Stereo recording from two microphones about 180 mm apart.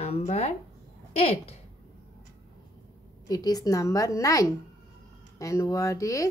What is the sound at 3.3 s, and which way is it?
A woman's voice, 20° left (ahead or behind).